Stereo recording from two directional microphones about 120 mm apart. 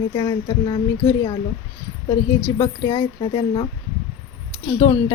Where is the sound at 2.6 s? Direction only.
35° left (ahead or behind).